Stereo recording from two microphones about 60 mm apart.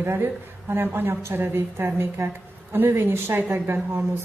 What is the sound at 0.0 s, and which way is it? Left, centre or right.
A woman's voice, right.